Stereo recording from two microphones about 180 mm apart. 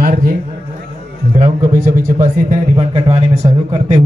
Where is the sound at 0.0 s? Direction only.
50° right (ahead or behind).